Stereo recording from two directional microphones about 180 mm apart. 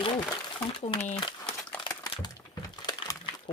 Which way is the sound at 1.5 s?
5° left (ahead or behind).